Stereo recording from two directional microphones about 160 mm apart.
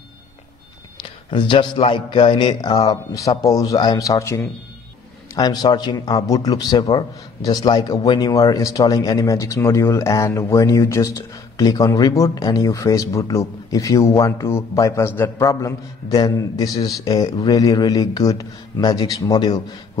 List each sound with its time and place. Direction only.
1.0 s a man's voice: 30° left (ahead or behind)